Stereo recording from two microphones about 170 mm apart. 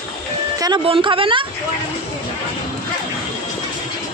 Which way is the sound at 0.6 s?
30° right (ahead or behind).